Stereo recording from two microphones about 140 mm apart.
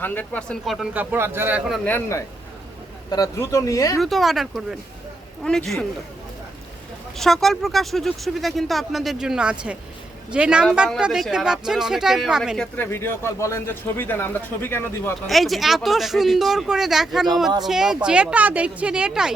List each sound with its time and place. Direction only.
0.0 s speech: 10° left (ahead or behind)
0.9 s a woman's voice: 15° right (ahead or behind)
1.8 s speech: 15° left (ahead or behind)
3.9 s speech: centre (ahead or behind)
7.2 s speech: centre (ahead or behind)
15.3 s a woman's voice: centre (ahead or behind)